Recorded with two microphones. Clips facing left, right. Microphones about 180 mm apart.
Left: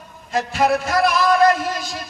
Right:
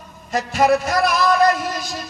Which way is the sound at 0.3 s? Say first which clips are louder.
Right 2 dB; 40° right (ahead or behind).